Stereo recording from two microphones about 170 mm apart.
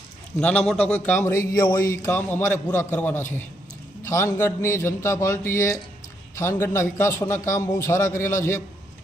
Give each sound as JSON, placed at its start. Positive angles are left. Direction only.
{"t": 0.3, "sound": "a man's voice", "side_deg": 5}